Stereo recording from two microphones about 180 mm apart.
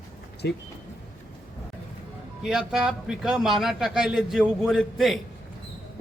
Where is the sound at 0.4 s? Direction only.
65° left (ahead or behind).